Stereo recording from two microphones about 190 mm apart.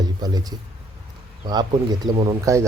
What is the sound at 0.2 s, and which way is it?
A man's voice, 20° right (ahead or behind).